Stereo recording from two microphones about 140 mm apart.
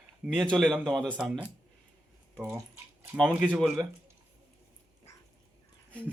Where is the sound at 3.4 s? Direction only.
Centre (ahead or behind).